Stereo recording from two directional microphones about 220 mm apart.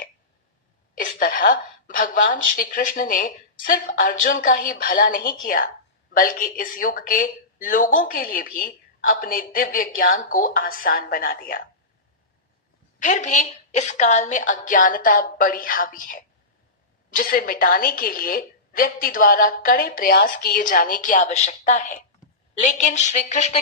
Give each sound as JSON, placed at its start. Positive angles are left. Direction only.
{"t": 1.2, "sound": "speech", "side_deg": 40}
{"t": 13.0, "sound": "speech", "side_deg": 35}